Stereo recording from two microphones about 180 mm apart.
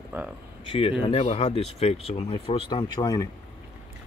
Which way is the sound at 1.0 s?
35° left (ahead or behind).